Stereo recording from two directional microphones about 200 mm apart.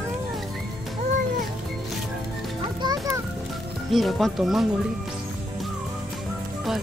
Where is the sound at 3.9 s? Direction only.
Centre (ahead or behind).